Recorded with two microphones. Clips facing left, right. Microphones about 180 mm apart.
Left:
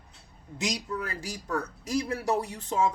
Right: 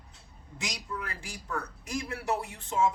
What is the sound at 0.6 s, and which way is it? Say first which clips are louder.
Speech: left 6 dB; 40° left (ahead or behind).